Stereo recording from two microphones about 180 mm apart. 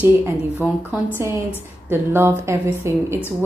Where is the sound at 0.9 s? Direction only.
10° right (ahead or behind).